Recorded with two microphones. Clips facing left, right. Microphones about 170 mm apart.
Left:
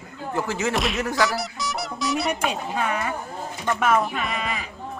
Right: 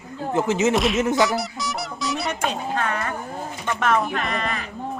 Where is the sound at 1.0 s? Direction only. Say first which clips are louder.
Right 3 dB; 20° right (ahead or behind).